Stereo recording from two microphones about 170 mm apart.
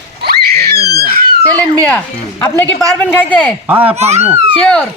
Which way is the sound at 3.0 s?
10° left (ahead or behind).